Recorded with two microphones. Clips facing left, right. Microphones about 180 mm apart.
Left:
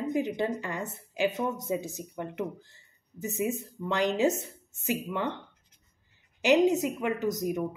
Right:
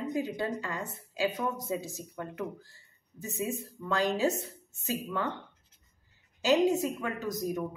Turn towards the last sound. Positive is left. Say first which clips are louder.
# left 4 dB
turn(degrees=20)  # may be behind; listen again after turning